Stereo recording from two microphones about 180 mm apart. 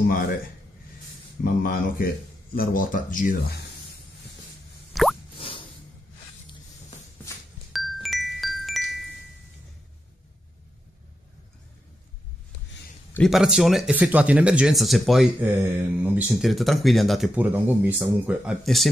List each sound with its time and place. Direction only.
0.1 s speech: 55° left (ahead or behind)
1.4 s speech: 50° left (ahead or behind)
4.9 s plop: centre (ahead or behind)
7.7 s chime: centre (ahead or behind)
13.1 s speech: centre (ahead or behind)